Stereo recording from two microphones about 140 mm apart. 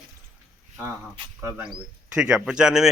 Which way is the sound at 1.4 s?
20° right (ahead or behind).